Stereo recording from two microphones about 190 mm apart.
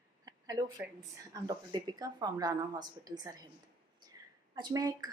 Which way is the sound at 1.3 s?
20° right (ahead or behind).